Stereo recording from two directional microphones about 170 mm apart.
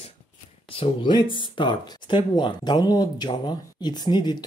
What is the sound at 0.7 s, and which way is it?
Speech, 30° left (ahead or behind).